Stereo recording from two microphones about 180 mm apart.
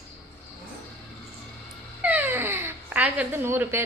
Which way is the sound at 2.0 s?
10° right (ahead or behind).